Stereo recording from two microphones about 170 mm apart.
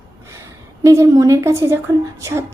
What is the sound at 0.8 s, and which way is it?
A woman's voice, 15° right (ahead or behind).